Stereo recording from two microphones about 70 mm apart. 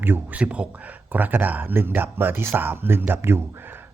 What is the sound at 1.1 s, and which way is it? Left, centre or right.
Speech, right.